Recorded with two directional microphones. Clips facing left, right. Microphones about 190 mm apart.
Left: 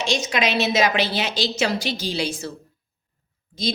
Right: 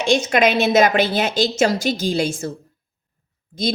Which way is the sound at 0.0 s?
55° right (ahead or behind).